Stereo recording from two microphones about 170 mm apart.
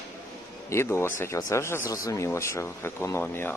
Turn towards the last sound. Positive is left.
turn(degrees=15)  # may be behind; listen again after turning